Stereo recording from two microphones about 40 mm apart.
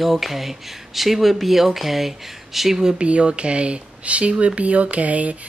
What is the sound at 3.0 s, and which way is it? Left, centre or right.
Speech, right.